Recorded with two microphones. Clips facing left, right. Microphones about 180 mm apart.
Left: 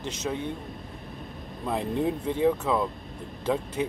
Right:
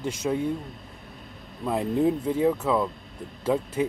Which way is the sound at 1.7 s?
5° right (ahead or behind).